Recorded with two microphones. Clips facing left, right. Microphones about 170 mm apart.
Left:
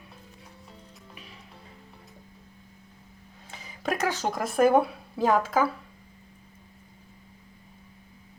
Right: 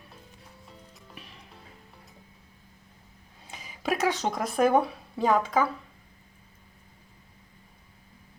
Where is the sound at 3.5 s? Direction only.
15° right (ahead or behind).